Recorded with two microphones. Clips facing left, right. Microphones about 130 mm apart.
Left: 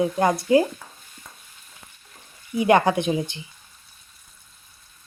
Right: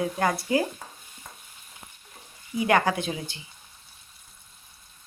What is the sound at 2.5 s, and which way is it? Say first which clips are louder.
Speech: left 5 dB; 25° left (ahead or behind).